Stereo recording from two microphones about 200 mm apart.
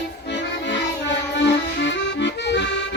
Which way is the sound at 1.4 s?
60° left (ahead or behind).